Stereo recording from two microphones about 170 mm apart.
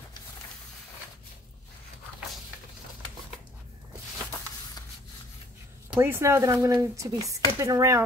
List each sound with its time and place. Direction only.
5.9 s speech: 15° right (ahead or behind)